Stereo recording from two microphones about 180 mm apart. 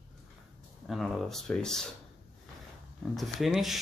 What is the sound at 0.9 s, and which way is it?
Speech, centre (ahead or behind).